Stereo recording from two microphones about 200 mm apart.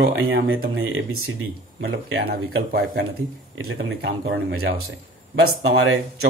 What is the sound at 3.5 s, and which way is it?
Speech, 90° right.